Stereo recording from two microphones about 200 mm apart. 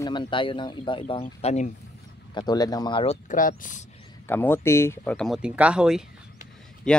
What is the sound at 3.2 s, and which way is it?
Speech, 40° left (ahead or behind).